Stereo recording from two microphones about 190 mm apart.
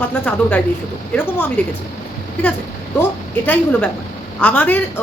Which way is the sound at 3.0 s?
10° left (ahead or behind).